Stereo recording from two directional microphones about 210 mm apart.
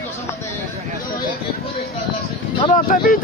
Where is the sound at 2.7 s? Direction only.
40° left (ahead or behind).